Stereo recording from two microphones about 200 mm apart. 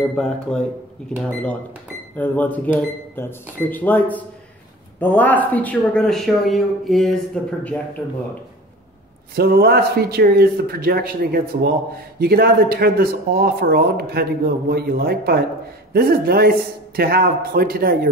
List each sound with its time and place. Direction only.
0.1 s a man's voice: 5° left (ahead or behind)
9.3 s speech: 50° right (ahead or behind)